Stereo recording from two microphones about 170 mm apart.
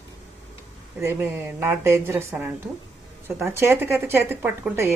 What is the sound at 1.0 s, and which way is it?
A woman's voice, 15° right (ahead or behind).